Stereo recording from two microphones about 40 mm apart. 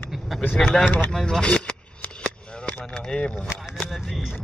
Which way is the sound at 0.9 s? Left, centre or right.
Left.